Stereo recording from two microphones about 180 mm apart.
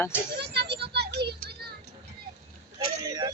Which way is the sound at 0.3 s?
70° right (ahead or behind).